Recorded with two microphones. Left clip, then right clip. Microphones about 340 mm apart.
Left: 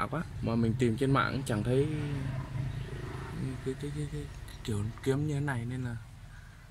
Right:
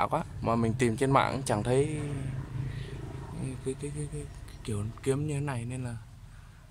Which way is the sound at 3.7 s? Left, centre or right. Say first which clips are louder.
Right 2 dB; centre.